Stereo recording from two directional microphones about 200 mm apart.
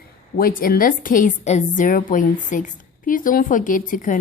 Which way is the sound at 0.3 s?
45° left (ahead or behind).